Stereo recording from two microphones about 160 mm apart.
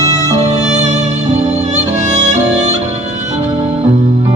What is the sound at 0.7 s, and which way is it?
Music, 45° right (ahead or behind).